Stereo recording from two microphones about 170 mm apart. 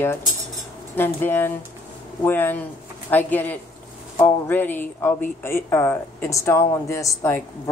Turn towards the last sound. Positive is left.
turn(degrees=15)  # may be behind; listen again after turning